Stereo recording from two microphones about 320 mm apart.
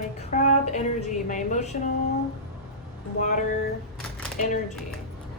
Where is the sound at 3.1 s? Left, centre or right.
Left.